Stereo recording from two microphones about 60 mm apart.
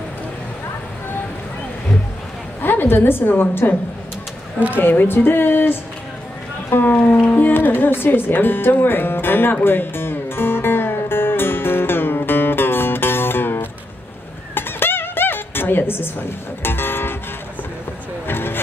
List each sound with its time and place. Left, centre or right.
2.6 s a woman's voice: left
4.7 s speech: left
7.3 s music: left
18.2 s vehicle: left